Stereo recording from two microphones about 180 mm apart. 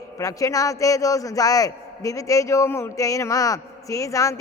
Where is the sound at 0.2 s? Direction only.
20° left (ahead or behind).